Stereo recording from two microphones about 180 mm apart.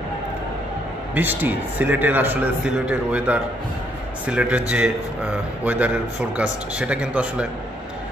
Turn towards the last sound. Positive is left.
turn(degrees=-5)  # may be behind; listen again after turning